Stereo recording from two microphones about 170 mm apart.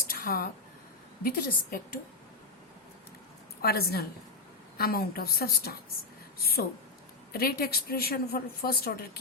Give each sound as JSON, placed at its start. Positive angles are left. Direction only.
{"t": 0.1, "sound": "a sound", "side_deg": 60}
{"t": 1.2, "sound": "a woman's voice", "side_deg": 60}
{"t": 3.6, "sound": "a woman's voice", "side_deg": 65}